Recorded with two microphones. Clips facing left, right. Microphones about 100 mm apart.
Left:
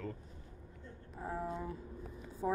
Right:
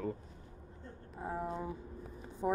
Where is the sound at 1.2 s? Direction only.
15° right (ahead or behind).